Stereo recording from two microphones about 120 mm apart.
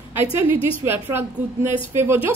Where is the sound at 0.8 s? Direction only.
20° right (ahead or behind).